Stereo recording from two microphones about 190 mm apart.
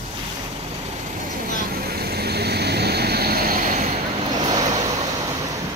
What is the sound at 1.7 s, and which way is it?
Vehicle, 55° right (ahead or behind).